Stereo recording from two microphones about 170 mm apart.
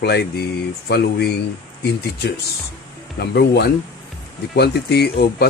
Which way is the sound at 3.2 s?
75° left (ahead or behind).